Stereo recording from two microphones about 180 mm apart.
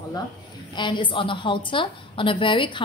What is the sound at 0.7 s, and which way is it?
A woman's voice, 25° left (ahead or behind).